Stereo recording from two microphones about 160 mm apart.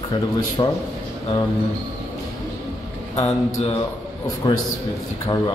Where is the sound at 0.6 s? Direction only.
30° left (ahead or behind).